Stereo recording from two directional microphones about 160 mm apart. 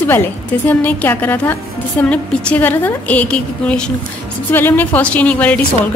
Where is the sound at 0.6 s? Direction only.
10° left (ahead or behind).